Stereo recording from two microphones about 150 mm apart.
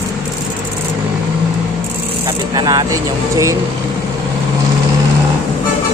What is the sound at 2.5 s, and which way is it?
Speech, 30° right (ahead or behind).